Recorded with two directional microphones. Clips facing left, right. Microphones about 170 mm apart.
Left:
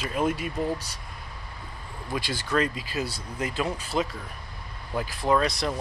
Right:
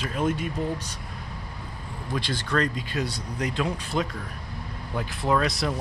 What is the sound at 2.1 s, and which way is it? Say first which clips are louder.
Speech: even; 5° left (ahead or behind).